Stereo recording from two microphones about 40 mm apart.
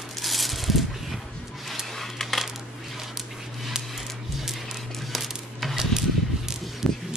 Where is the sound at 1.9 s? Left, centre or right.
Centre.